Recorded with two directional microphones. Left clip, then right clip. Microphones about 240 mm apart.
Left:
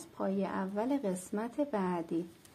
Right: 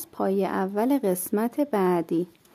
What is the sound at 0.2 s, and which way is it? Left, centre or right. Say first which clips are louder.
Speech: right 10 dB; right.